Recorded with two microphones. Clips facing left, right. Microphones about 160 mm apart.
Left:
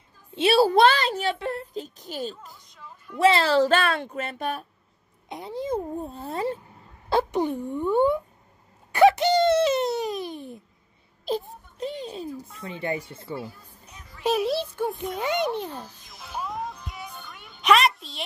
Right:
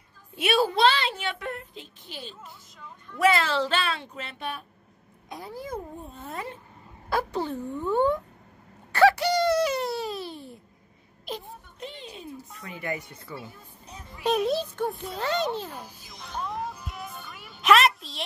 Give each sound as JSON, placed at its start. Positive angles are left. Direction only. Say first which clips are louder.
{"t": 0.3, "sound": "a child's voice", "louder": "left 5 dB", "side_deg": 30}
{"t": 0.7, "sound": "a child's voice", "louder": "left 4 dB", "side_deg": 45}
{"t": 3.2, "sound": "a woman's voice", "louder": "left 4 dB", "side_deg": 30}
{"t": 5.3, "sound": "a child's voice", "louder": "left 7 dB", "side_deg": 20}
{"t": 5.9, "sound": "a child's voice", "louder": "left 7 dB", "side_deg": 35}
{"t": 7.1, "sound": "a sound", "louder": "left 4 dB", "side_deg": 25}
{"t": 7.3, "sound": "speech", "louder": "left 4 dB", "side_deg": 15}
{"t": 8.9, "sound": "a sound", "louder": "left 3 dB", "side_deg": 20}
{"t": 11.2, "sound": "music", "louder": "left 8 dB", "side_deg": 35}
{"t": 14.2, "sound": "a child's voice", "louder": "left 1 dB", "side_deg": 5}
{"t": 15.7, "sound": "speech", "louder": "left 3 dB", "side_deg": -10}
{"t": 16.1, "sound": "music", "louder": "even", "side_deg": 5}